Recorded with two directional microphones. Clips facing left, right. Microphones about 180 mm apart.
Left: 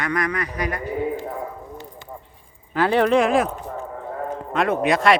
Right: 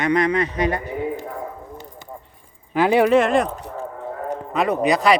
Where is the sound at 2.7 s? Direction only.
10° right (ahead or behind).